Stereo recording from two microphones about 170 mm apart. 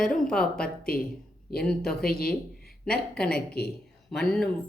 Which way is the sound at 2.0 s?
60° left (ahead or behind).